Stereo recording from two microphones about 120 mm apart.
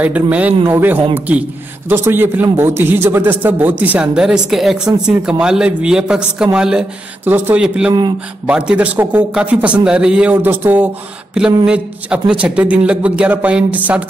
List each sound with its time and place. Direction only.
0.0 s a man's voice: 10° right (ahead or behind)